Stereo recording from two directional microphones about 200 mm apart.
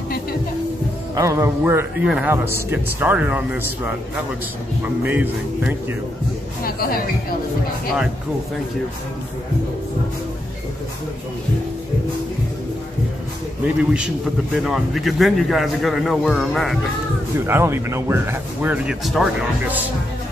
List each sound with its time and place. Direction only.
1.1 s a man's voice: 15° right (ahead or behind)
6.6 s a woman's voice: 50° left (ahead or behind)
13.9 s a man's voice: 5° right (ahead or behind)
17.5 s a man's voice: 10° right (ahead or behind)